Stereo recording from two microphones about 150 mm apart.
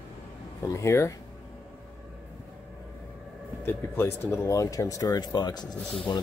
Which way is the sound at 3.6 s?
15° left (ahead or behind).